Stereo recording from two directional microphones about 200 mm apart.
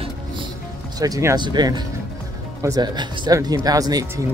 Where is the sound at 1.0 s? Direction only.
15° right (ahead or behind).